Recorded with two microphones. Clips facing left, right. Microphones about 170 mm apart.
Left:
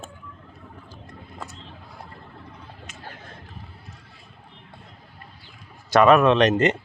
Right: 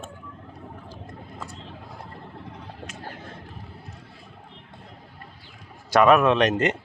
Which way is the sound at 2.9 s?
35° right (ahead or behind).